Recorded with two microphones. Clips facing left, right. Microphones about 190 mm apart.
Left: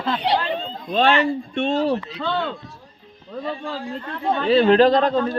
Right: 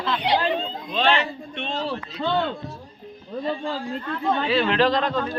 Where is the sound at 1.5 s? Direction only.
45° left (ahead or behind).